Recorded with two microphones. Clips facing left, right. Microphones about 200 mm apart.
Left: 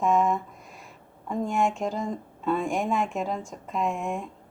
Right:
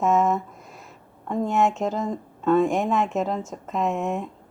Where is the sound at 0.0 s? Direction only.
45° right (ahead or behind).